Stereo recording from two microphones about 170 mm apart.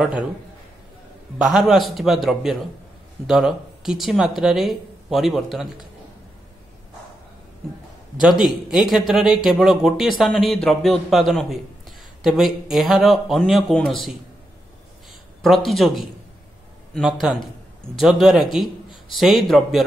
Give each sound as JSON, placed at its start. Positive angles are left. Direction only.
{"t": 1.4, "sound": "speech", "side_deg": -5}
{"t": 8.2, "sound": "speech", "side_deg": -5}
{"t": 15.4, "sound": "speech", "side_deg": 0}